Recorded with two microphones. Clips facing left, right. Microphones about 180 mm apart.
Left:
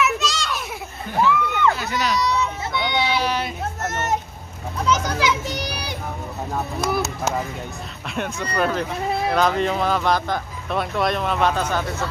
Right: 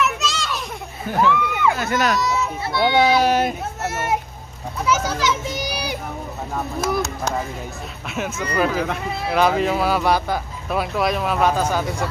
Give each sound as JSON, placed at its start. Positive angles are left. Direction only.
{"t": 0.0, "sound": "children playing", "side_deg": 0}
{"t": 1.3, "sound": "a sound", "side_deg": -5}
{"t": 1.8, "sound": "speech", "side_deg": -50}
{"t": 2.1, "sound": "a sound", "side_deg": -5}
{"t": 2.8, "sound": "speech", "side_deg": -45}
{"t": 3.8, "sound": "speech", "side_deg": -10}
{"t": 6.8, "sound": "speech", "side_deg": 5}